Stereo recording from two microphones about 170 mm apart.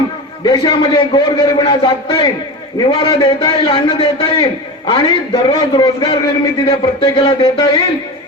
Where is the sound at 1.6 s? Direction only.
30° left (ahead or behind).